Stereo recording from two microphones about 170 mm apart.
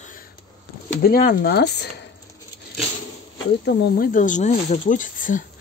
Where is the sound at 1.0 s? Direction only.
60° left (ahead or behind).